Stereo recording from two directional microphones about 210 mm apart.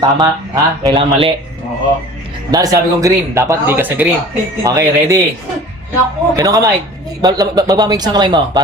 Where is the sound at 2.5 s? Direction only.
15° right (ahead or behind).